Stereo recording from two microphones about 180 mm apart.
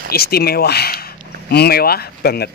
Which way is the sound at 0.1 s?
60° left (ahead or behind).